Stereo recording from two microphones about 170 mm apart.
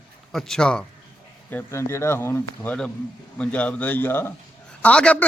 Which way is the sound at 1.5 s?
15° left (ahead or behind).